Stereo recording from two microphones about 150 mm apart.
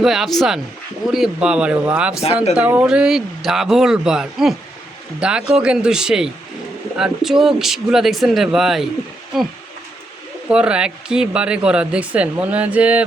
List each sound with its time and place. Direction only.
0.0 s speech: centre (ahead or behind)
2.2 s speech: 45° left (ahead or behind)
2.6 s speech: 10° right (ahead or behind)
10.5 s speech: 5° right (ahead or behind)